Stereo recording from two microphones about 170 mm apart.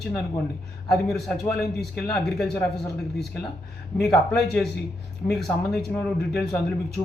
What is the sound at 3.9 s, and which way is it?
Speech, centre (ahead or behind).